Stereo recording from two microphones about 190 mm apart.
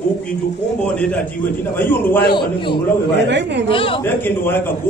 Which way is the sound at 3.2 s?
65° right (ahead or behind).